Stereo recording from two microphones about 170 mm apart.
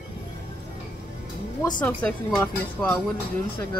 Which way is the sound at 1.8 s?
5° left (ahead or behind).